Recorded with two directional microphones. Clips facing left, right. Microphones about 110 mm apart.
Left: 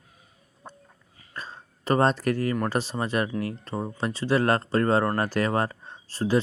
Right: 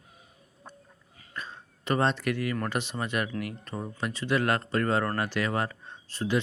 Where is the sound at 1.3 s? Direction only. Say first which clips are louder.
Left 1 dB; 35° left (ahead or behind).